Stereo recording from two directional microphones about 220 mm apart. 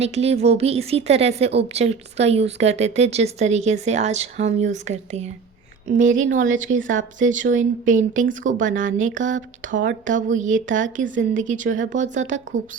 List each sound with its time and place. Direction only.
0.0 s a woman's voice: 30° right (ahead or behind)
6.3 s a woman's voice: 35° right (ahead or behind)